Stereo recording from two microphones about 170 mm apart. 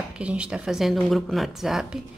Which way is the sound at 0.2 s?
5° right (ahead or behind).